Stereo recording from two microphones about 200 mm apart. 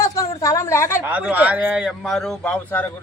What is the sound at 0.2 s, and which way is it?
Speech, 15° left (ahead or behind).